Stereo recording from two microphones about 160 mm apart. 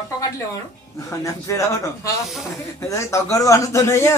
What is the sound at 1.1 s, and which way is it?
A man's voice, 20° left (ahead or behind).